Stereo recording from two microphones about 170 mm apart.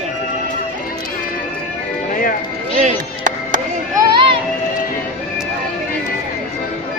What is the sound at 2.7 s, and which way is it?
Music, 50° right (ahead or behind).